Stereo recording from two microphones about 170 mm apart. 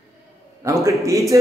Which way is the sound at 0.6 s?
15° right (ahead or behind).